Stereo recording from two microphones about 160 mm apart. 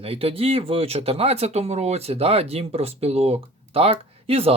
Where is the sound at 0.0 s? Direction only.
35° right (ahead or behind).